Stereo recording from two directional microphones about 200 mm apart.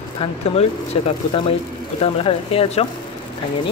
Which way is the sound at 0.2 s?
25° left (ahead or behind).